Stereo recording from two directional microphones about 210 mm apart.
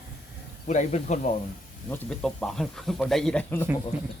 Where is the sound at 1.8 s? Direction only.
5° left (ahead or behind).